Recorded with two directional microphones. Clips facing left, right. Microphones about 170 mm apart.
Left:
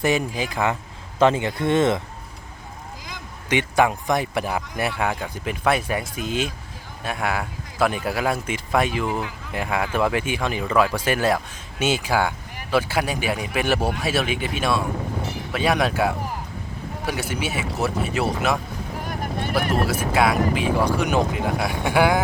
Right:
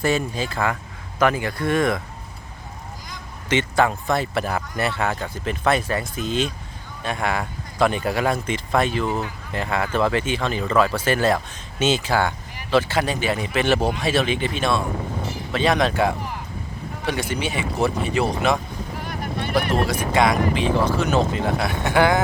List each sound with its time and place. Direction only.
0.0 s a man's voice: 15° left (ahead or behind)
3.5 s a man's voice: 15° left (ahead or behind)
19.0 s boat: 45° left (ahead or behind)
19.9 s a man's voice: 5° left (ahead or behind)